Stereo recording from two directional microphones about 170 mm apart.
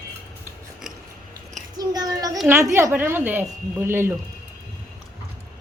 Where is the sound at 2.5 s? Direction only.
15° right (ahead or behind).